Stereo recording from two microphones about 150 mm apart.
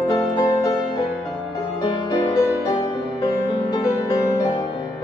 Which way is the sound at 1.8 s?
30° left (ahead or behind).